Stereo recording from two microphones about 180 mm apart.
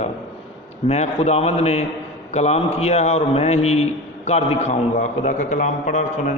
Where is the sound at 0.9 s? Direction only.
35° left (ahead or behind).